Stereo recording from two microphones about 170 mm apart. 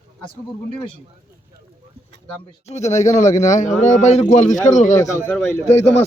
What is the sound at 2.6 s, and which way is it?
A man's voice, 40° left (ahead or behind).